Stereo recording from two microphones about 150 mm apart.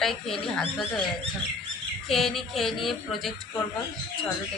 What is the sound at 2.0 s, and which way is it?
Speech, centre (ahead or behind).